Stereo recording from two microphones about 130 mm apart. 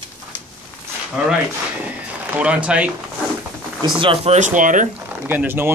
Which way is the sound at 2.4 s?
10° right (ahead or behind).